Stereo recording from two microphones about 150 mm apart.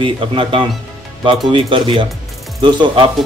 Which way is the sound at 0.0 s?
35° right (ahead or behind).